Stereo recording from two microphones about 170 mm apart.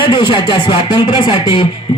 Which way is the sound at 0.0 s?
25° left (ahead or behind).